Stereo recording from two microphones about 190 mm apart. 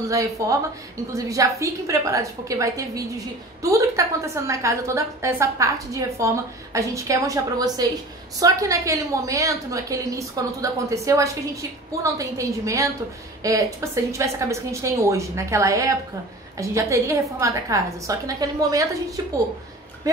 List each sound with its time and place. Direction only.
0.0 s a woman's voice: 15° right (ahead or behind)